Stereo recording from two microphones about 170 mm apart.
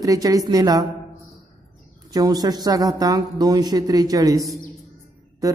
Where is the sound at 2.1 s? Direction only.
20° right (ahead or behind).